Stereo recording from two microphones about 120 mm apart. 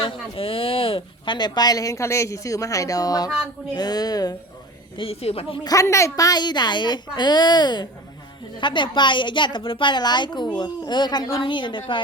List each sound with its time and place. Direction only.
0.0 s speech: 50° left (ahead or behind); by 4.4 s 35° left (ahead or behind)
4.9 s speech: 50° left (ahead or behind)
5.6 s speech: 25° left (ahead or behind); by 11.8 s 40° left (ahead or behind)